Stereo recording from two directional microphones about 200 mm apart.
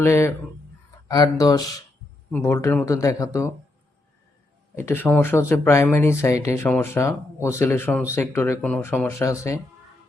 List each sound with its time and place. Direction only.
0.0 s speech: 15° left (ahead or behind)
4.8 s speech: 10° left (ahead or behind)